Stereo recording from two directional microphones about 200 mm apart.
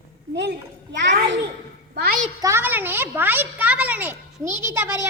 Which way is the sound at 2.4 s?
15° right (ahead or behind).